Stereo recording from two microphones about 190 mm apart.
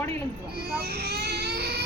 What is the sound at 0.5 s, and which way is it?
Speech, 55° right (ahead or behind).